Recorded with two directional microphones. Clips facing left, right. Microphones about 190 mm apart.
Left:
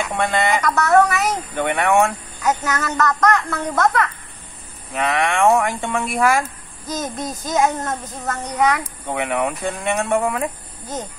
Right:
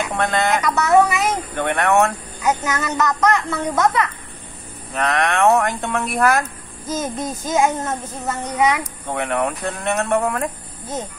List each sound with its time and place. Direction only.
0.2 s a child's voice: 5° left (ahead or behind)
2.4 s a child's voice: 15° right (ahead or behind); by 10.5 s centre (ahead or behind)